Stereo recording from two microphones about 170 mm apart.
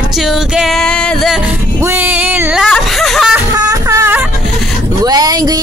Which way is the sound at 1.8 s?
15° right (ahead or behind).